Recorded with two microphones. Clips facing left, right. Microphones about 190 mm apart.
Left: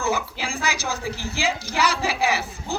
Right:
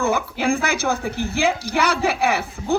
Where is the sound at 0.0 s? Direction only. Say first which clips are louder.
Right 5 dB; 55° right (ahead or behind).